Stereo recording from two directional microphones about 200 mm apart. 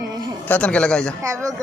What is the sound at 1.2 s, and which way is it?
Speech, 15° right (ahead or behind).